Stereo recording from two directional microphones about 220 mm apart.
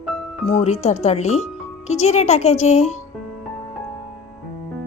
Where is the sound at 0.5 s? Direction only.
30° left (ahead or behind).